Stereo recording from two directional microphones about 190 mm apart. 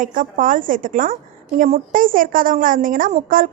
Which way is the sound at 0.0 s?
45° right (ahead or behind).